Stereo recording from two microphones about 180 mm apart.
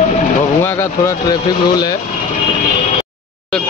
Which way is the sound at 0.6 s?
15° left (ahead or behind).